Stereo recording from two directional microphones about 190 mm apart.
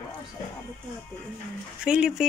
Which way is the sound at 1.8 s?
5° right (ahead or behind).